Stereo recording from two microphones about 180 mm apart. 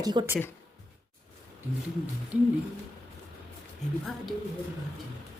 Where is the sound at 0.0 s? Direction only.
25° right (ahead or behind).